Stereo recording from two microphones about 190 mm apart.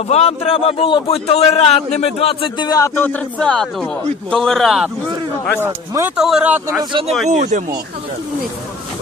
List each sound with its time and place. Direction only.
0.1 s a man's voice: 30° left (ahead or behind); by 6.8 s 10° right (ahead or behind)
6.8 s speech: 25° right (ahead or behind)
7.2 s speech: 40° right (ahead or behind)